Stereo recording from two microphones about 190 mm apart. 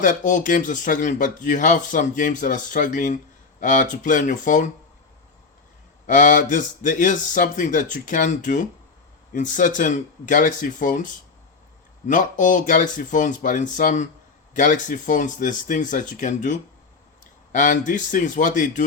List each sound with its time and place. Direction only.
0.0 s speech: 40° left (ahead or behind)
6.1 s a man's voice: 40° left (ahead or behind)